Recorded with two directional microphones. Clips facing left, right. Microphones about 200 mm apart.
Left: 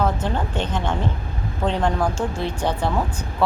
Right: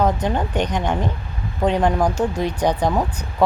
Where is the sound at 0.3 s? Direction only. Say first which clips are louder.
Right 3 dB; 15° right (ahead or behind).